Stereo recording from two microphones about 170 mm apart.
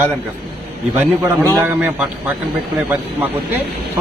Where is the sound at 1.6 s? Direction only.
10° right (ahead or behind).